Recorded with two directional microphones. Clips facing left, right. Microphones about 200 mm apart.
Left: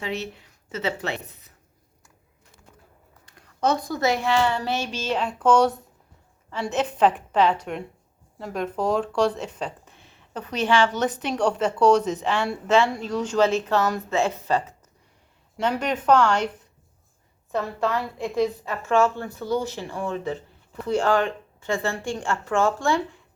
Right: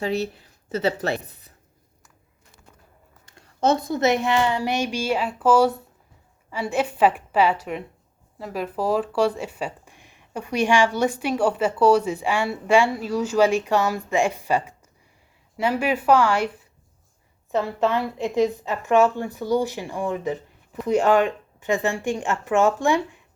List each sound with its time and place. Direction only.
0.0 s a woman's voice: 35° right (ahead or behind)
3.2 s speech: 25° right (ahead or behind)